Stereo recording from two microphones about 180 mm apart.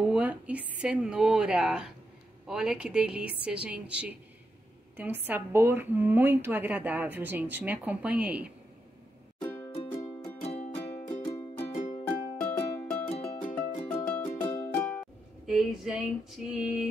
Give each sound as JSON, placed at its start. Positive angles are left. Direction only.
{"t": 0.0, "sound": "a woman's voice", "side_deg": -10}
{"t": 9.4, "sound": "music", "side_deg": 10}
{"t": 10.4, "sound": "music", "side_deg": 35}
{"t": 11.2, "sound": "music", "side_deg": 15}
{"t": 11.7, "sound": "music", "side_deg": 45}
{"t": 12.1, "sound": "music", "side_deg": 10}